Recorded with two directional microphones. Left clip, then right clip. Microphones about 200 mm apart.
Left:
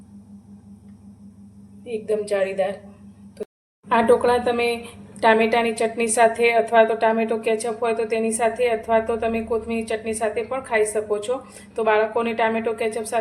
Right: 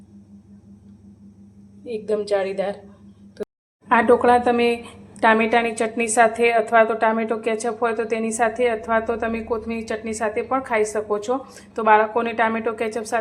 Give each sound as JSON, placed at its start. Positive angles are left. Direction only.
{"t": 1.8, "sound": "a woman's voice", "side_deg": -30}
{"t": 3.8, "sound": "a woman's voice", "side_deg": -25}